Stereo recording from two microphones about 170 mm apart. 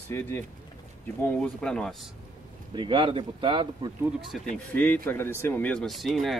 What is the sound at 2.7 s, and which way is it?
Speech, 30° right (ahead or behind).